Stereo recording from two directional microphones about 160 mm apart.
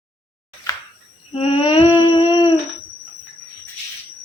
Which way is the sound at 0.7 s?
20° left (ahead or behind).